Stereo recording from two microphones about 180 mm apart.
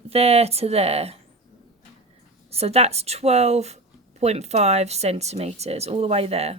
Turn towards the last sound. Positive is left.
turn(degrees=-35)  # may be behind; listen again after turning